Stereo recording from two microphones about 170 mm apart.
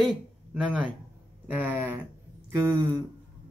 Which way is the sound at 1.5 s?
10° right (ahead or behind).